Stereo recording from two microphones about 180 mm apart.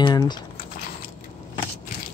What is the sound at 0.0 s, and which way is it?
Typing, 25° left (ahead or behind).